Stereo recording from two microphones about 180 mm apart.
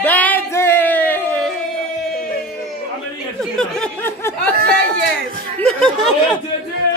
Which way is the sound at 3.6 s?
5° left (ahead or behind).